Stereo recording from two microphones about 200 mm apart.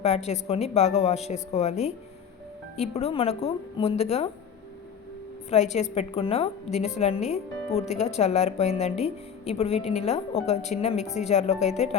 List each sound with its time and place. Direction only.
0.0 s a woman's voice: 30° left (ahead or behind)
5.5 s a woman's voice: 35° left (ahead or behind)